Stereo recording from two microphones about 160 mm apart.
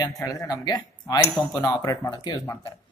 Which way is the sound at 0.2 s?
20° left (ahead or behind).